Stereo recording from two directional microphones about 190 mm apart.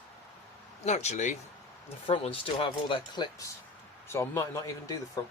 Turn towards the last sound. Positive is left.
turn(degrees=15)  # may be behind; listen again after turning